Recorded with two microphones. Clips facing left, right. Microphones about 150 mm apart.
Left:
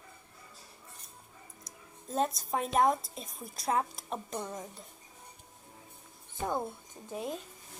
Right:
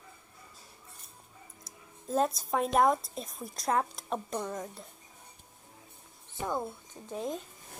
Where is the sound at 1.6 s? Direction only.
Centre (ahead or behind).